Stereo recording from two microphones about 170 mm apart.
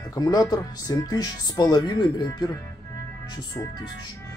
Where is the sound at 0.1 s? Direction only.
25° left (ahead or behind).